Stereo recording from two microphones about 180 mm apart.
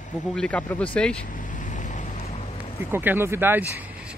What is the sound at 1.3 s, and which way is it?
Vehicle, 45° left (ahead or behind).